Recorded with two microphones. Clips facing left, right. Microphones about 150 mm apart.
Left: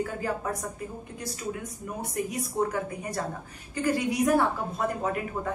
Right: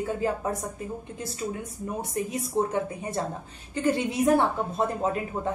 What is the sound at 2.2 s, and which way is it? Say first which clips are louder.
A woman's voice: right 1 dB; 25° right (ahead or behind).